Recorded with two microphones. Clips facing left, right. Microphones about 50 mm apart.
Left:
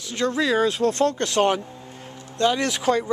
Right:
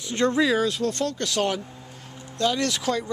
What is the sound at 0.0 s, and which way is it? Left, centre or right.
Speech, right.